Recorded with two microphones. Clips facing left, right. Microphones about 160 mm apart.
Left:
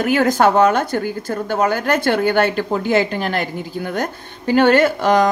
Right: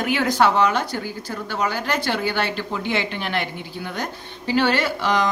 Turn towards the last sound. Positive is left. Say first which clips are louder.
# left 7 dB
turn(degrees=50)  # may be behind; listen again after turning